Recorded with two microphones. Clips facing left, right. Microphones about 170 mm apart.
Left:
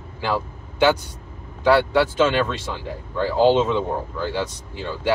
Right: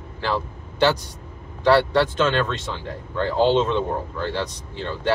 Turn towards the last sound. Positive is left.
turn(degrees=5)  # may be behind; listen again after turning